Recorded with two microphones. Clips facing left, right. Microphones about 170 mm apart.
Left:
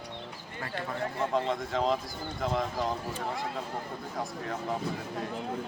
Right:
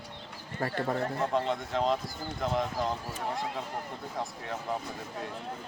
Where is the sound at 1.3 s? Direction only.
Centre (ahead or behind).